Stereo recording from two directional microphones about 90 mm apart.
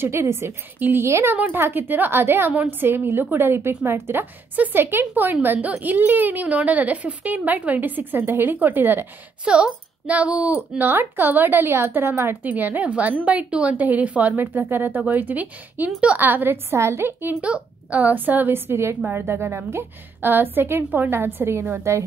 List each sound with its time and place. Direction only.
0.0 s a woman's voice: 30° right (ahead or behind)
9.4 s a woman's voice: 10° right (ahead or behind)
17.4 s a woman's voice: 15° right (ahead or behind)